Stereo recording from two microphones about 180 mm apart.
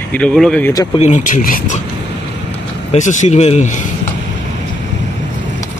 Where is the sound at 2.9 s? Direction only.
40° left (ahead or behind).